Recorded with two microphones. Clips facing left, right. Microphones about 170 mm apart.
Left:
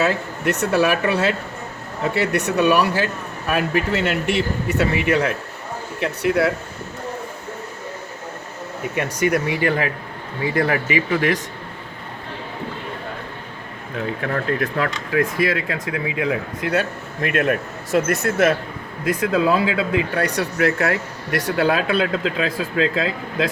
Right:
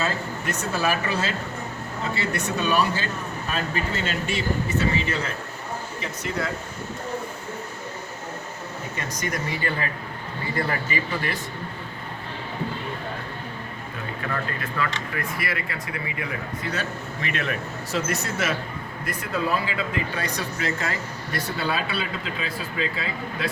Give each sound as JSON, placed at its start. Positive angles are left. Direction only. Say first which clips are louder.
{"t": 0.0, "sound": "speech", "louder": "left 7 dB", "side_deg": 70}
{"t": 9.0, "sound": "speech", "louder": "left 11 dB", "side_deg": 65}
{"t": 14.6, "sound": "speech", "louder": "left 6 dB", "side_deg": 90}
{"t": 19.0, "sound": "speech", "louder": "left 9 dB", "side_deg": 90}